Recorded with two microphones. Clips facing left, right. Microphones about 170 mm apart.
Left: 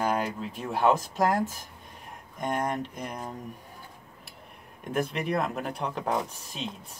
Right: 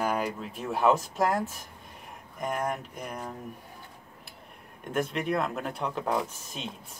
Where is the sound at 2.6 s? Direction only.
5° right (ahead or behind).